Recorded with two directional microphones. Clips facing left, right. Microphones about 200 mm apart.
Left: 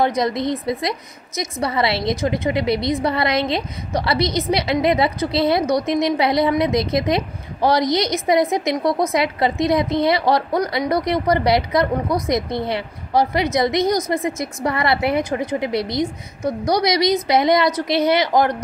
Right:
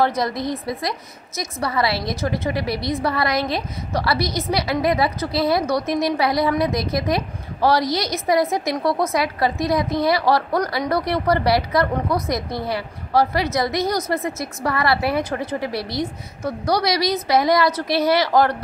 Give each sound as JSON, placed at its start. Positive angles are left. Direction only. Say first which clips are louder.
{"t": 0.0, "sound": "a woman's voice", "louder": "left 2 dB", "side_deg": 20}